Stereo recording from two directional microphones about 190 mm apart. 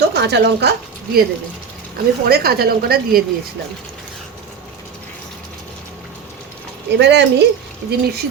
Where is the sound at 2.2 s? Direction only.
55° right (ahead or behind).